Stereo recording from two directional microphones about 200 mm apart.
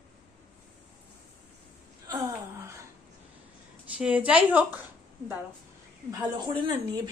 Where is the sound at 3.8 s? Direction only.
5° right (ahead or behind).